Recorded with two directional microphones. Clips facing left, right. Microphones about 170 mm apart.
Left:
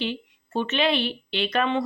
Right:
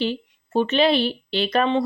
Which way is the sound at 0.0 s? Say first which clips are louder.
Right 5 dB; 40° right (ahead or behind).